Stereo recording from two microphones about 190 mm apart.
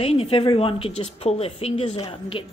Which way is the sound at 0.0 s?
30° left (ahead or behind).